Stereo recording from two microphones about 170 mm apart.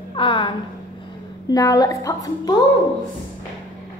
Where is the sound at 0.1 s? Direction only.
30° left (ahead or behind).